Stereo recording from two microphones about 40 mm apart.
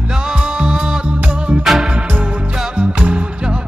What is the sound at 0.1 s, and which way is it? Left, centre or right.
Music, centre.